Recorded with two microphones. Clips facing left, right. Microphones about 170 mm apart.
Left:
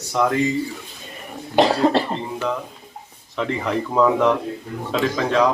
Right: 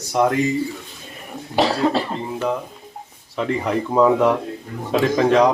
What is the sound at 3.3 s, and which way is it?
Speech, 10° right (ahead or behind).